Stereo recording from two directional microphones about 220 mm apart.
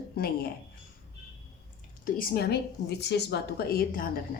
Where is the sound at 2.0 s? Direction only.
40° left (ahead or behind).